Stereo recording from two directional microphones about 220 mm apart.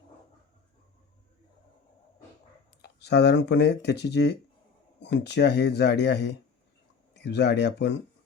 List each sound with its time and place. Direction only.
2.8 s speech: 50° left (ahead or behind)